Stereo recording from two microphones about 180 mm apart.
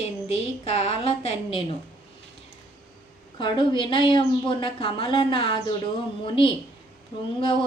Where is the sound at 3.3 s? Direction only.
25° left (ahead or behind).